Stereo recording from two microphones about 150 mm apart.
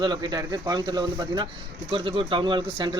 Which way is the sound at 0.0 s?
30° right (ahead or behind).